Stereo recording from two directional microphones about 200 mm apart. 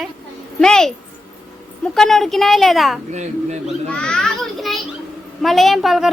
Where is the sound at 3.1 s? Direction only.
35° right (ahead or behind).